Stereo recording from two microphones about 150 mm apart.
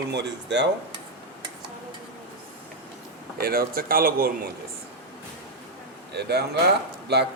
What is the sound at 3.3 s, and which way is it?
Speech, 85° right.